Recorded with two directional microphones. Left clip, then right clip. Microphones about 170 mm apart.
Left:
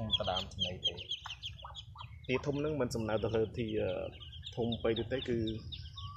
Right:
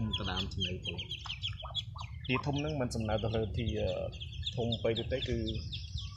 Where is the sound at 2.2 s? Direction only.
45° left (ahead or behind).